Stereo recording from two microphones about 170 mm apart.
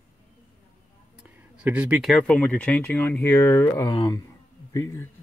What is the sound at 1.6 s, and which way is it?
Speech, 10° right (ahead or behind).